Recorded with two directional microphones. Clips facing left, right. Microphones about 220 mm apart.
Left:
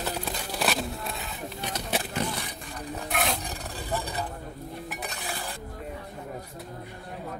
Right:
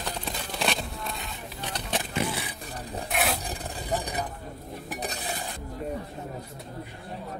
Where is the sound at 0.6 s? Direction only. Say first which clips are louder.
Left 2 dB; 5° left (ahead or behind).